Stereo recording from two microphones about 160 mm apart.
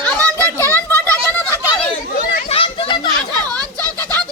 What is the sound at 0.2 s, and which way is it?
Children playing, 20° right (ahead or behind).